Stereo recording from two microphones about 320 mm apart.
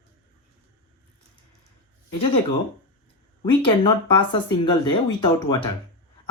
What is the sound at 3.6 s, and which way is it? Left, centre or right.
Speech, centre.